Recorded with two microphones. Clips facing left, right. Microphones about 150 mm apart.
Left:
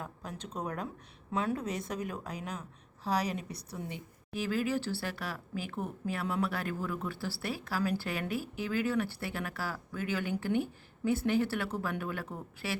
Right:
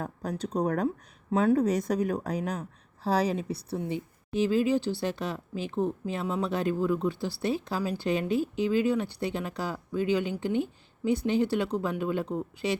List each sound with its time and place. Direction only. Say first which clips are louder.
0.0 s a woman's voice: right 9 dB; 40° right (ahead or behind); by 12.8 s 20° right (ahead or behind)